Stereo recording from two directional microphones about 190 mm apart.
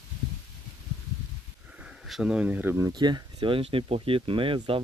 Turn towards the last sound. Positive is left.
turn(degrees=-25)  # may be behind; listen again after turning